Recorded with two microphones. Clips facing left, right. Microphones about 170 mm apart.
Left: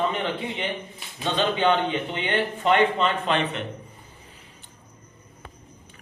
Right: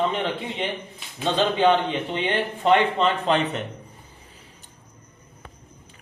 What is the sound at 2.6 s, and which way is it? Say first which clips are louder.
A man's voice: right 2 dB; 35° right (ahead or behind).